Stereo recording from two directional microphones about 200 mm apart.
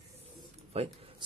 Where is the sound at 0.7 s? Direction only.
30° right (ahead or behind).